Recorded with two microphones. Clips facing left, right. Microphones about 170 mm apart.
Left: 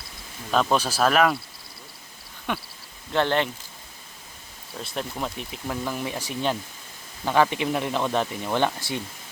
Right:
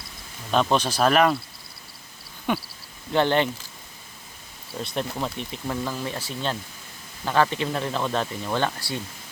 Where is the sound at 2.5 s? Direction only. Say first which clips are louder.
Right 4 dB; 5° right (ahead or behind).